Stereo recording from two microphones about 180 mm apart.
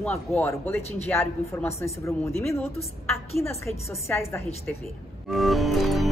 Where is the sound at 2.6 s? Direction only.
35° left (ahead or behind).